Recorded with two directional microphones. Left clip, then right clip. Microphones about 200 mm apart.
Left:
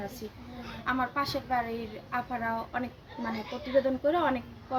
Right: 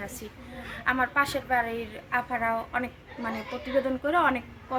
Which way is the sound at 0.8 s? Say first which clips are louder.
Right 5 dB; 5° right (ahead or behind).